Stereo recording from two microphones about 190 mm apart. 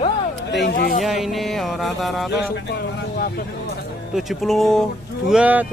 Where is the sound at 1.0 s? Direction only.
Centre (ahead or behind).